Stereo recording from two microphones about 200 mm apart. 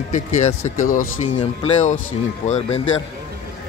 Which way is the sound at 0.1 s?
35° left (ahead or behind).